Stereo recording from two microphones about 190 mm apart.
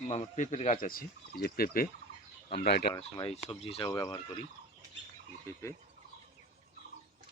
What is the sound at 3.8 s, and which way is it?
Speech, 20° left (ahead or behind).